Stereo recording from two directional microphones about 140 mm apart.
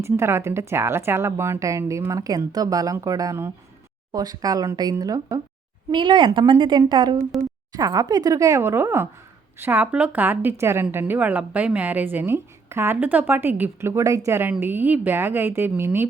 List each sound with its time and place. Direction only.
0.0 s a woman's voice: 20° right (ahead or behind)